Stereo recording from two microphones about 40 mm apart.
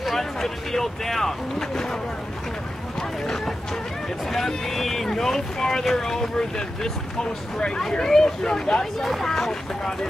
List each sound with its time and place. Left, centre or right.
0.0 s speech: centre
3.0 s speech: centre